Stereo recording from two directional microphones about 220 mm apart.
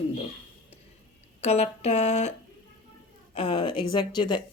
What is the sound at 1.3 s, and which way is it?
Speech, 30° left (ahead or behind).